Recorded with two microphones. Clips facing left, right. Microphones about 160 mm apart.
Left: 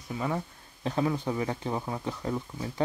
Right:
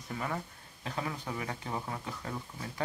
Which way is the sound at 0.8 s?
30° left (ahead or behind).